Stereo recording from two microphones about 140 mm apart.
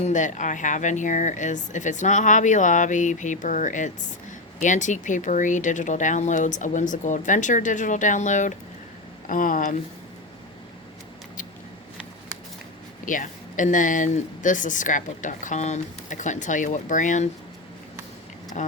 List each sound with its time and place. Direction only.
0.0 s speech: 60° left (ahead or behind)
9.2 s speech: 75° left (ahead or behind)
13.1 s speech: 70° left (ahead or behind)